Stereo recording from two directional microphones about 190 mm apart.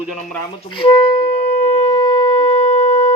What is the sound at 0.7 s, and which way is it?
Wind instrument, 30° left (ahead or behind).